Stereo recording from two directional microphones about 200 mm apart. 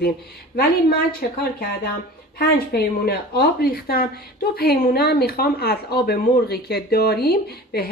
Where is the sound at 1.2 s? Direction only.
50° left (ahead or behind).